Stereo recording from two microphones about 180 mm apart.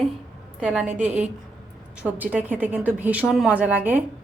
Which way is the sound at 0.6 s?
5° right (ahead or behind).